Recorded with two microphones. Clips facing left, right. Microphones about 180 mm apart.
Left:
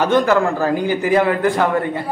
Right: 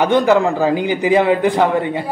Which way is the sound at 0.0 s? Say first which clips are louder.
Right 2 dB; 15° right (ahead or behind).